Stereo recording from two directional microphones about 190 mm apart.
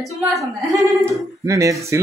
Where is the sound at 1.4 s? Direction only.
15° right (ahead or behind).